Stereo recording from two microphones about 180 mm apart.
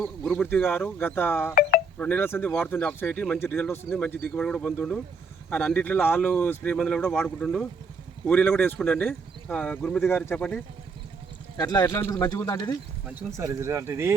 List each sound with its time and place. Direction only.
0.0 s speech: 10° left (ahead or behind)
11.5 s speech: 20° left (ahead or behind)
13.1 s speech: 15° right (ahead or behind)